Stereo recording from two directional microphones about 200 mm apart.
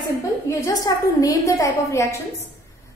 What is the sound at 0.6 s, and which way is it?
A woman's voice, 20° left (ahead or behind).